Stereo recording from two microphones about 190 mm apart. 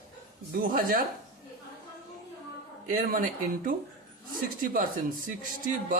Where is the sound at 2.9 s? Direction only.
50° right (ahead or behind).